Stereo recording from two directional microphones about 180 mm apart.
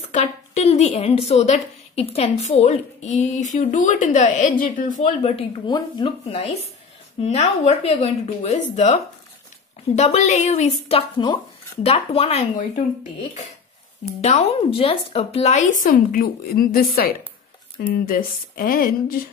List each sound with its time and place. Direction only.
0.1 s a woman's voice: 40° left (ahead or behind)
5.3 s a woman's voice: 25° left (ahead or behind)
14.2 s a woman's voice: 35° left (ahead or behind); by 19.2 s 55° left (ahead or behind)